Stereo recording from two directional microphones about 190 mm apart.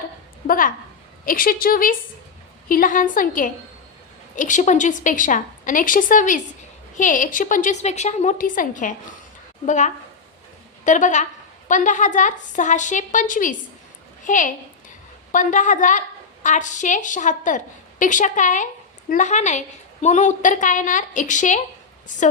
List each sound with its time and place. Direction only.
0.4 s a woman's voice: 45° left (ahead or behind)